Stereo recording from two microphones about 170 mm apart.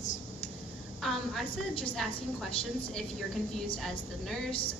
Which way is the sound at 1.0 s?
Centre (ahead or behind).